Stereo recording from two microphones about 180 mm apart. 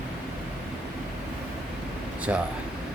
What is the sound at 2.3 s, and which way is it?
Speech, 10° right (ahead or behind).